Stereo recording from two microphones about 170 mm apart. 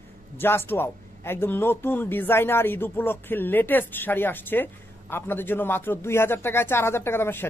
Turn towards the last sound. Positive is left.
turn(degrees=15)  # may be behind; listen again after turning